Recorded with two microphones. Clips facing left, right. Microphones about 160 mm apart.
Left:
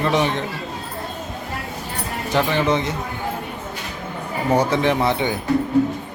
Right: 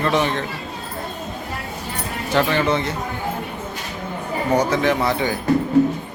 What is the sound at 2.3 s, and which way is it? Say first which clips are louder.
Speech: even; 15° left (ahead or behind).